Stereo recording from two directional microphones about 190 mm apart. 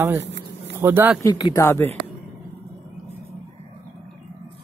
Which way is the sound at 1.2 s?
20° left (ahead or behind).